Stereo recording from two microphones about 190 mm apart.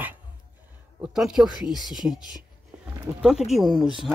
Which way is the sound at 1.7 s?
20° left (ahead or behind).